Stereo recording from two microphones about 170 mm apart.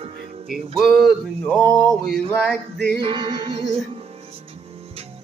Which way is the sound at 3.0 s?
30° right (ahead or behind).